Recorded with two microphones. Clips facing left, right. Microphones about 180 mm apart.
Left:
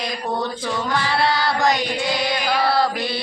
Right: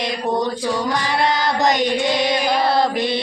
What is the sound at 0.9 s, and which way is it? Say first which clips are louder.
Carnatic music: right 1 dB; 15° right (ahead or behind).